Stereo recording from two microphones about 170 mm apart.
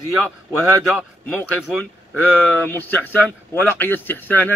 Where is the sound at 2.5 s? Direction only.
10° left (ahead or behind).